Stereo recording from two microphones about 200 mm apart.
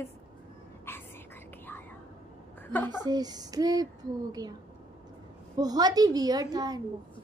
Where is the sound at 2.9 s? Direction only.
20° right (ahead or behind).